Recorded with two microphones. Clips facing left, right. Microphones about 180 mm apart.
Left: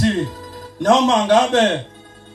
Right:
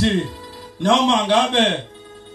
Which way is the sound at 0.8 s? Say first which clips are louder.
Left 3 dB; 45° left (ahead or behind).